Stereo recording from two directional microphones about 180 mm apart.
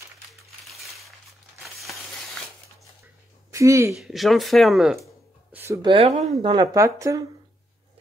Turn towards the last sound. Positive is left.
turn(degrees=-15)  # may be behind; listen again after turning